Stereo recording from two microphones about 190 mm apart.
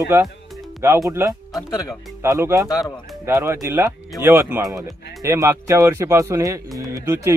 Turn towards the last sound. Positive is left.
turn(degrees=-15)  # may be behind; listen again after turning